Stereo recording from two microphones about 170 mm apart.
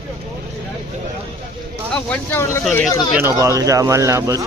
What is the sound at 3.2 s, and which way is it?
Speech, 15° right (ahead or behind).